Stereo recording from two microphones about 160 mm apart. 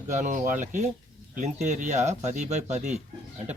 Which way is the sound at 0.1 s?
50° right (ahead or behind).